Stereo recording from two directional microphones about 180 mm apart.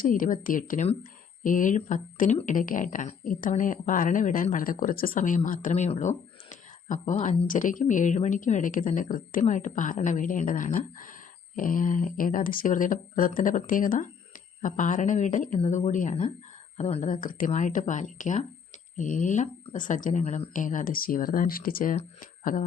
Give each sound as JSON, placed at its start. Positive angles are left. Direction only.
{"t": 0.0, "sound": "speech", "side_deg": 50}